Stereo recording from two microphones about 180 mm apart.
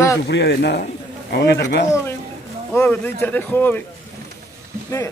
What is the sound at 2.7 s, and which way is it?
Speech, 10° left (ahead or behind).